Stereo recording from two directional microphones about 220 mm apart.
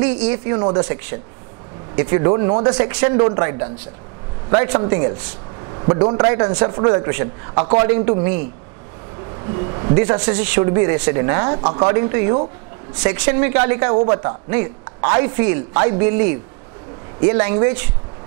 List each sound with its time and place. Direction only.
0.0 s speech: 15° right (ahead or behind)
2.7 s speech: 10° right (ahead or behind)
3.0 s speech: 20° right (ahead or behind)
4.5 s speech: 20° right (ahead or behind)
9.4 s a woman's voice: 25° right (ahead or behind)
17.3 s speech: 20° right (ahead or behind)